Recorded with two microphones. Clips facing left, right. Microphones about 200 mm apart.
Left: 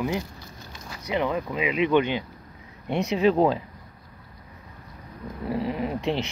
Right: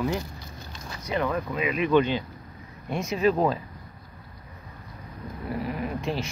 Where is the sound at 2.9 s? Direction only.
65° left (ahead or behind).